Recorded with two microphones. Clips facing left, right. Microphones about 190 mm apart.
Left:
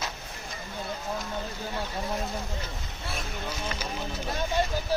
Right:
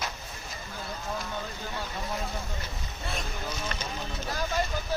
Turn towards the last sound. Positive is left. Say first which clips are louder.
# left 2 dB
turn(degrees=25)  # may be behind; listen again after turning